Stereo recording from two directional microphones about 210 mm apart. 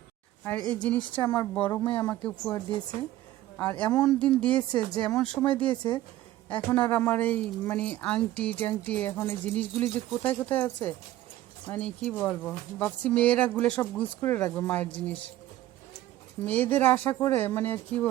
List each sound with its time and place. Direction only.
0.7 s a woman's voice: 5° left (ahead or behind)
3.6 s a woman's voice: 5° left (ahead or behind)
16.4 s a woman's voice: 10° left (ahead or behind)